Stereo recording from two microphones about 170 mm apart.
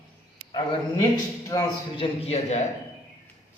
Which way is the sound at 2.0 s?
35° left (ahead or behind).